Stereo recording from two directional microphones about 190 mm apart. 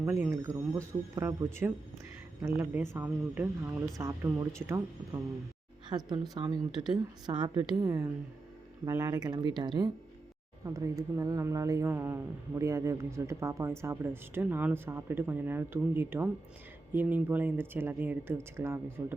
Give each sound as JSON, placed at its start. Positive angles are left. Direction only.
{"t": 0.0, "sound": "a woman's voice", "side_deg": -15}